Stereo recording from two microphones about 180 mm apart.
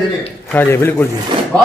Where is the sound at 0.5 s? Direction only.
10° left (ahead or behind).